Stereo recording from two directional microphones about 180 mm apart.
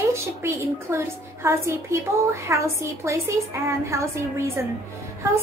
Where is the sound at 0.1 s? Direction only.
15° right (ahead or behind).